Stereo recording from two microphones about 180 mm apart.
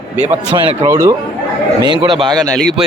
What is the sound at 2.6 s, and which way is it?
Speech, centre (ahead or behind).